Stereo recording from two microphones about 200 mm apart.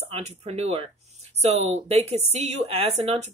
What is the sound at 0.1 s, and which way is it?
Speech, 30° right (ahead or behind).